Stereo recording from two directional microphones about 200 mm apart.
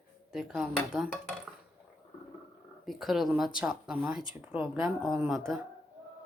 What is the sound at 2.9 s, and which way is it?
Speech, centre (ahead or behind).